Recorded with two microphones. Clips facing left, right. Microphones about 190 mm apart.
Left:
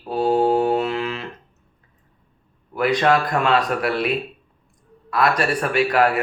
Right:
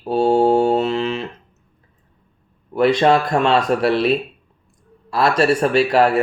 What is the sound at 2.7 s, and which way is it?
Speech, 25° right (ahead or behind).